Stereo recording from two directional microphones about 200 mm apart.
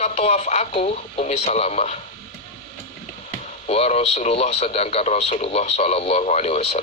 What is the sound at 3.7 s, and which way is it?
Speech, 30° left (ahead or behind).